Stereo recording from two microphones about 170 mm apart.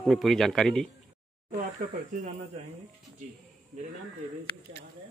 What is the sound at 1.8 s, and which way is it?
Speech, 40° right (ahead or behind).